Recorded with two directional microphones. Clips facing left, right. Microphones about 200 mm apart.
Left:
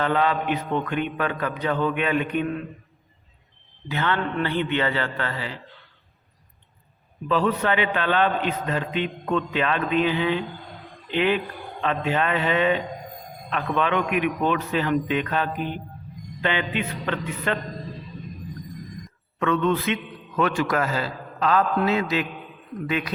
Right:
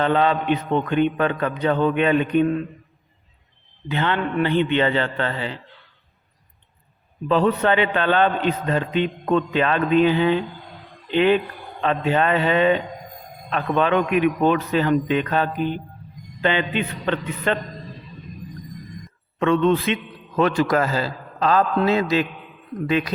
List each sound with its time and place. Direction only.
0.0 s mantra: 25° right (ahead or behind)
3.8 s mantra: 25° right (ahead or behind)
7.3 s a man's voice: 35° right (ahead or behind)
19.4 s mantra: 25° right (ahead or behind)
19.9 s a man's voice: 35° right (ahead or behind)